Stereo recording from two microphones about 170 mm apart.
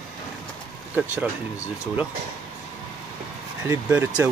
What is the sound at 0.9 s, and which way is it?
Speech, 10° right (ahead or behind).